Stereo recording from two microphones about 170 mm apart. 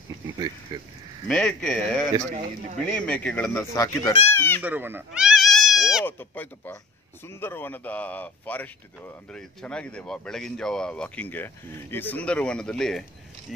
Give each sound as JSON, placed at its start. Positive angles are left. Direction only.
{"t": 0.7, "sound": "speech", "side_deg": -25}
{"t": 1.2, "sound": "speech", "side_deg": 5}
{"t": 4.6, "sound": "goat", "side_deg": -10}
{"t": 6.0, "sound": "speech", "side_deg": 10}